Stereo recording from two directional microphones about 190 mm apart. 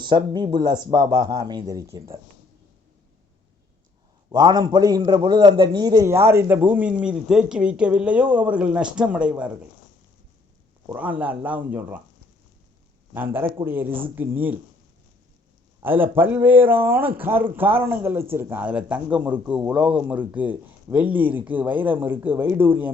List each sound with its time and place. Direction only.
0.0 s speech: 25° right (ahead or behind)
4.3 s a man's voice: 20° right (ahead or behind); by 9.5 s 5° right (ahead or behind)
10.8 s a man's voice: 10° right (ahead or behind)
13.1 s a man's voice: 10° right (ahead or behind)
15.8 s a man's voice: 10° right (ahead or behind)